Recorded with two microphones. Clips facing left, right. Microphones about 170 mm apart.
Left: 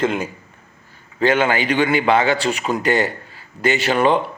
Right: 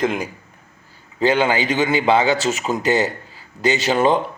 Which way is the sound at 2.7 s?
40° right (ahead or behind).